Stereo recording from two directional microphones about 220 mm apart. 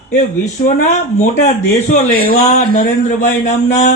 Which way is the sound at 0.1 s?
35° left (ahead or behind).